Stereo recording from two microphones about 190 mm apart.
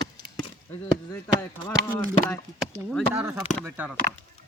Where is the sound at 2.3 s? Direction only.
5° left (ahead or behind).